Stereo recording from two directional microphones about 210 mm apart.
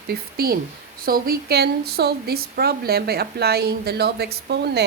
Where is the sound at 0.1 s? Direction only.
45° right (ahead or behind).